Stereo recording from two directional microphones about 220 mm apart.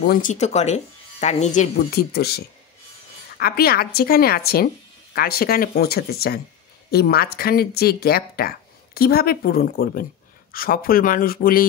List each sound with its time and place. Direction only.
0.0 s speech: 40° left (ahead or behind)